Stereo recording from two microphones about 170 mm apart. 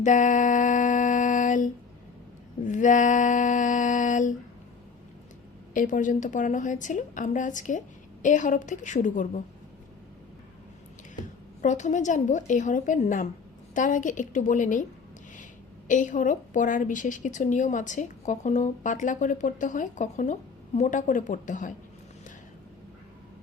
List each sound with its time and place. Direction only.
0.0 s a sound: 45° left (ahead or behind)
5.7 s a woman's voice: 50° left (ahead or behind)
11.6 s a woman's voice: 45° left (ahead or behind)
15.9 s a woman's voice: 50° left (ahead or behind)